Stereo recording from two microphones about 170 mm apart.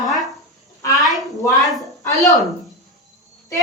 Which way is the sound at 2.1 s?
20° left (ahead or behind).